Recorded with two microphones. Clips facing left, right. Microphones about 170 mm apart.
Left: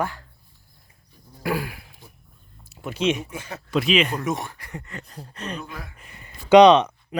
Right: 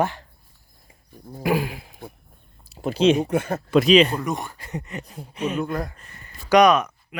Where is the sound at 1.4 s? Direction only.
20° right (ahead or behind).